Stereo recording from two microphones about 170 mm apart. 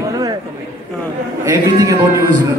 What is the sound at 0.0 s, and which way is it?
Chatter, 20° right (ahead or behind).